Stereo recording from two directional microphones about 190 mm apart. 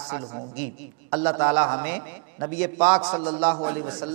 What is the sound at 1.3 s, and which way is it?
A man's voice, 15° right (ahead or behind).